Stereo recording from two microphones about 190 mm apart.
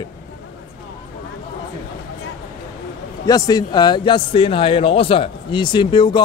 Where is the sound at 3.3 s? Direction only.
20° left (ahead or behind).